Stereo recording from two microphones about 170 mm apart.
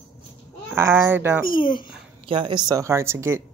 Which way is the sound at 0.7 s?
15° right (ahead or behind).